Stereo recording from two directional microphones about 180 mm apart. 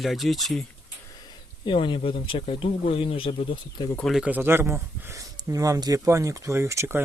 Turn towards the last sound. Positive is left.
turn(degrees=-15)  # may be behind; listen again after turning